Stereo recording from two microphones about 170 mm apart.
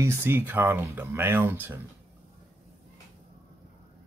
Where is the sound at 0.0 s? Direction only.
15° right (ahead or behind).